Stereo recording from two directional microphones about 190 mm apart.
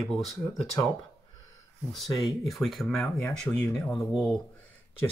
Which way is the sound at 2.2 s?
Centre (ahead or behind).